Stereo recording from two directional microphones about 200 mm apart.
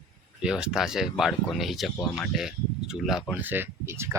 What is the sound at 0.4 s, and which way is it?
Speech, 5° right (ahead or behind).